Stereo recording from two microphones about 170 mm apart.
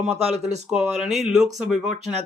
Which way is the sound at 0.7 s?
5° right (ahead or behind).